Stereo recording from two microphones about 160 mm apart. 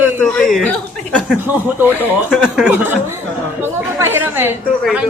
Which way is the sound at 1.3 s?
10° right (ahead or behind).